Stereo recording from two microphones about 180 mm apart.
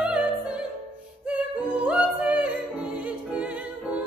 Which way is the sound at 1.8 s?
5° right (ahead or behind).